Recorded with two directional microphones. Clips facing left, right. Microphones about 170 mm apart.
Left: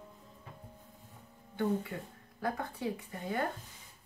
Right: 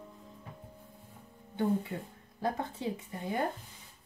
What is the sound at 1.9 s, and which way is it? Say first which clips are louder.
A woman's voice: right 2 dB; 25° right (ahead or behind).